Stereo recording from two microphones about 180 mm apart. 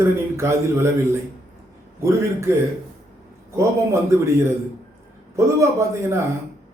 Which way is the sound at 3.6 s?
15° right (ahead or behind).